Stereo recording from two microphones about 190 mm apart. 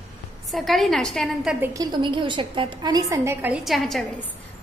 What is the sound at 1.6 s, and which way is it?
A woman's voice, 20° right (ahead or behind).